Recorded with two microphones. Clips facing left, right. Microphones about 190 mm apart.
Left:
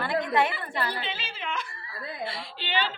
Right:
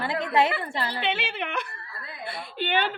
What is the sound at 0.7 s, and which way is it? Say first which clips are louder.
Speech: even; 25° right (ahead or behind).